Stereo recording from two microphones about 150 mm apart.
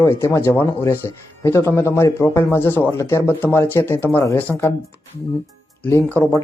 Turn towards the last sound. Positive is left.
turn(degrees=10)  # may be behind; listen again after turning